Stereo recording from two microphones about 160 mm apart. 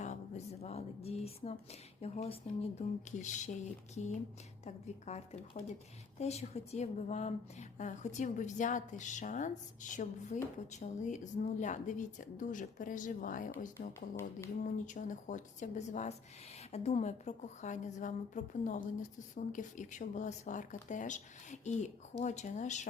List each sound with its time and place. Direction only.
0.0 s speech: 45° left (ahead or behind)
4.6 s a woman's voice: 45° left (ahead or behind)
13.7 s speech: 15° left (ahead or behind)
14.6 s a woman's voice: 55° left (ahead or behind)